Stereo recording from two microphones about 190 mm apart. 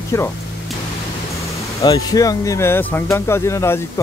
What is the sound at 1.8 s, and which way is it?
Speech, 20° left (ahead or behind).